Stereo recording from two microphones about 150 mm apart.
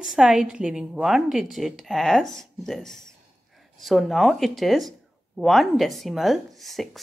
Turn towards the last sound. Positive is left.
turn(degrees=0)  # may be behind; listen again after turning